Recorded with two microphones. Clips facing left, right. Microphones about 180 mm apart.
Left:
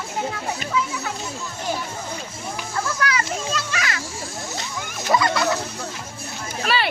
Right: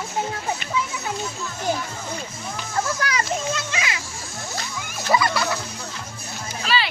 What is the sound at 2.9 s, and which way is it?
Children playing, 30° right (ahead or behind).